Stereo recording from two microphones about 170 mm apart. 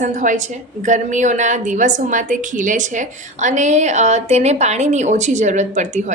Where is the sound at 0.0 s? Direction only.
45° right (ahead or behind).